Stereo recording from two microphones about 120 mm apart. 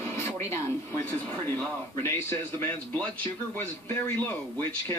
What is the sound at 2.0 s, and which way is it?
A man's voice, 20° left (ahead or behind).